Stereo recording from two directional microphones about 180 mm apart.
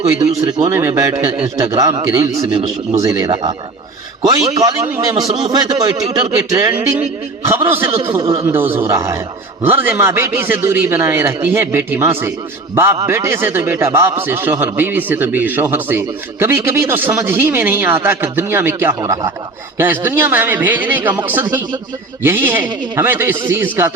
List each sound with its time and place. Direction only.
0.0 s a man's voice: 20° right (ahead or behind)
6.1 s speech: 35° right (ahead or behind)
7.0 s a man's voice: 10° right (ahead or behind)
7.9 s a man's voice: 30° right (ahead or behind); by 23.9 s 10° right (ahead or behind)